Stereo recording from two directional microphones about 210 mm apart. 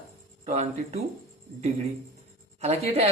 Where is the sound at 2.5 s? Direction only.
30° right (ahead or behind).